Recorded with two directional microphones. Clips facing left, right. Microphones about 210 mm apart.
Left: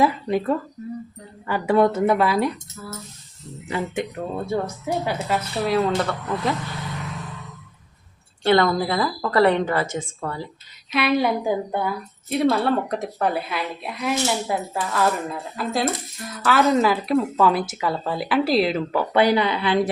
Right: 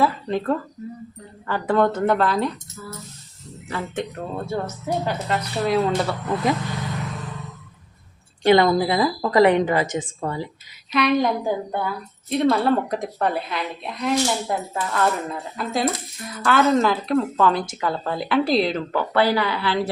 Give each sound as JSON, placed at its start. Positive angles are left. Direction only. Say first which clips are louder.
{"t": 0.0, "sound": "speech", "louder": "left 1 dB", "side_deg": 10}
{"t": 3.7, "sound": "a woman's voice", "louder": "left 2 dB", "side_deg": 15}
{"t": 8.4, "sound": "a woman's voice", "louder": "right 2 dB", "side_deg": -15}
{"t": 10.9, "sound": "a woman's voice", "louder": "right 1 dB", "side_deg": 5}
{"t": 19.1, "sound": "speech", "louder": "left 2 dB", "side_deg": 20}